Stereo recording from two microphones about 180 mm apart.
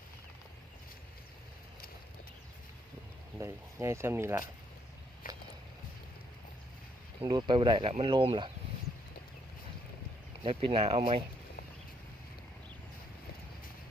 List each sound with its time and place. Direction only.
3.3 s speech: 15° right (ahead or behind)
5.2 s vehicle: 50° left (ahead or behind)
7.2 s speech: 25° right (ahead or behind)
10.4 s speech: 35° right (ahead or behind)